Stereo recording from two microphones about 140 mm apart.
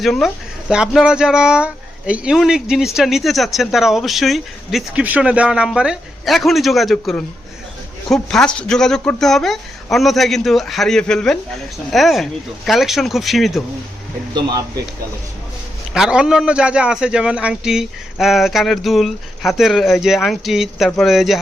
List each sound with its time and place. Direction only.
0.0 s speech: centre (ahead or behind)
16.0 s speech: 5° right (ahead or behind)